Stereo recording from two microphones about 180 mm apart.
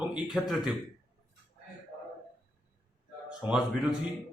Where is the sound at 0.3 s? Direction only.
Centre (ahead or behind).